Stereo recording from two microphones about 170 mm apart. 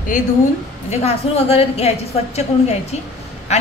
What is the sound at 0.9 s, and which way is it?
A woman's voice, 35° left (ahead or behind).